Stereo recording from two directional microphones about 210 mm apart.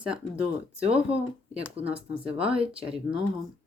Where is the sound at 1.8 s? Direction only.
30° right (ahead or behind).